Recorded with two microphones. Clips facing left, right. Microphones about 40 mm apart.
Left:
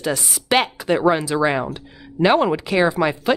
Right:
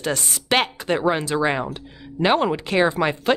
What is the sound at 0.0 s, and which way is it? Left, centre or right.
A woman's voice, centre.